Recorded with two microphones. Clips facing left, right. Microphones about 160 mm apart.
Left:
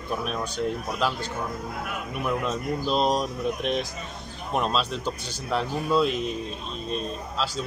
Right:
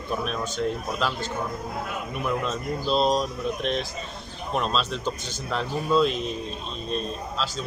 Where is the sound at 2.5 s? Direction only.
15° left (ahead or behind).